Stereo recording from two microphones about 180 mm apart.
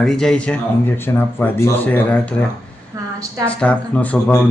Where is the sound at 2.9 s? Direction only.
15° right (ahead or behind).